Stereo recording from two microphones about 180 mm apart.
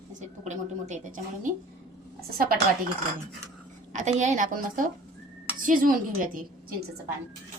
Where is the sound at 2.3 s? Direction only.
55° right (ahead or behind).